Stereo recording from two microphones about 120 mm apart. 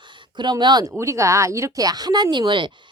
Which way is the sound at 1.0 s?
25° right (ahead or behind).